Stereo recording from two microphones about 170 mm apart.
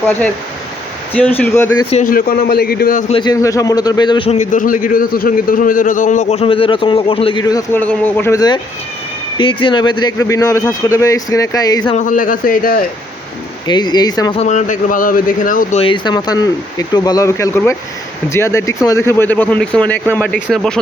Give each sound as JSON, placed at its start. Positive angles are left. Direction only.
{"t": 0.0, "sound": "speech", "side_deg": 10}
{"t": 1.9, "sound": "a man's voice", "side_deg": 50}
{"t": 3.1, "sound": "speech", "side_deg": 25}
{"t": 4.3, "sound": "a man's voice", "side_deg": 50}
{"t": 7.8, "sound": "speech", "side_deg": 10}
{"t": 8.4, "sound": "speech", "side_deg": 25}
{"t": 11.9, "sound": "a man's voice", "side_deg": 50}
{"t": 13.7, "sound": "speech", "side_deg": 25}
{"t": 14.3, "sound": "a man's voice", "side_deg": 45}
{"t": 15.8, "sound": "speech", "side_deg": 30}